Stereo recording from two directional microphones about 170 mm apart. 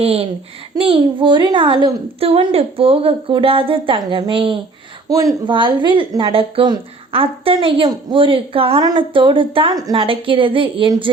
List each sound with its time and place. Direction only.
0.0 s a woman's voice: 35° right (ahead or behind)